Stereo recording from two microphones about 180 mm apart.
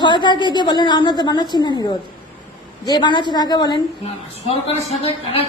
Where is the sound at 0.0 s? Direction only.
25° left (ahead or behind).